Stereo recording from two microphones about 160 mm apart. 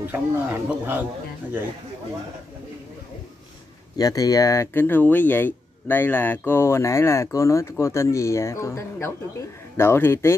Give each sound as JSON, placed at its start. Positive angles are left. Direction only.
{"t": 0.1, "sound": "speech", "side_deg": -10}
{"t": 3.9, "sound": "speech", "side_deg": 25}